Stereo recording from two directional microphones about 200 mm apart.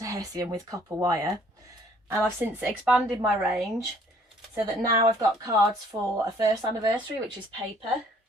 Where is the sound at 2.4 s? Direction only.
5° right (ahead or behind).